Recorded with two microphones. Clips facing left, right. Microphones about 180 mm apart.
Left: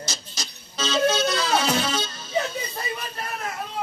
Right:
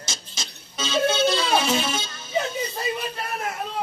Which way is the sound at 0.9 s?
25° right (ahead or behind).